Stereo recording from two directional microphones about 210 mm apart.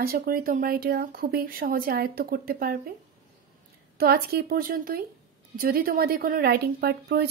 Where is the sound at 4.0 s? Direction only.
45° right (ahead or behind).